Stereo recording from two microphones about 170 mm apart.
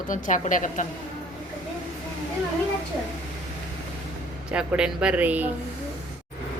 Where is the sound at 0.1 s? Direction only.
50° left (ahead or behind).